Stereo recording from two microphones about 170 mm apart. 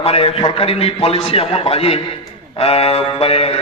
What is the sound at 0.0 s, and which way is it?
Speech, 35° left (ahead or behind).